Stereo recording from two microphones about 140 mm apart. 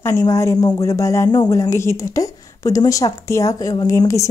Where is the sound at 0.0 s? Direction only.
20° left (ahead or behind).